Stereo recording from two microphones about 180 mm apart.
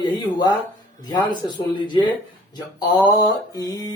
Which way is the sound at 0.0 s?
25° left (ahead or behind).